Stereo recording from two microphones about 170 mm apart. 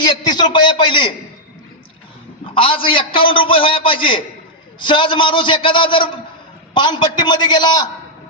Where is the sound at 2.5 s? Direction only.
30° left (ahead or behind).